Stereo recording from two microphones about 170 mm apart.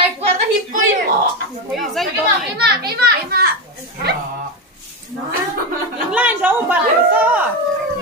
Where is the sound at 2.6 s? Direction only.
70° right (ahead or behind).